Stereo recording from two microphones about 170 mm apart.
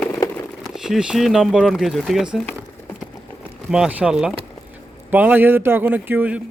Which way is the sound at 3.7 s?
5° right (ahead or behind).